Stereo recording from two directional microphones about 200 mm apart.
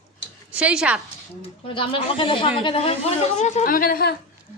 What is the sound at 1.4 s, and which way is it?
Speech, 25° left (ahead or behind).